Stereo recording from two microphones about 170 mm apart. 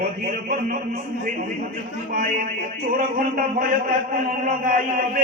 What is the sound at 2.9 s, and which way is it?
A man's voice, 55° right (ahead or behind).